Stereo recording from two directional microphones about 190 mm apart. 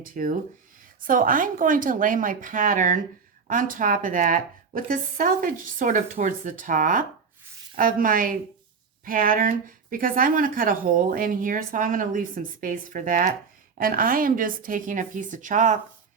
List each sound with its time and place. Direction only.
0.0 s speech: 45° right (ahead or behind)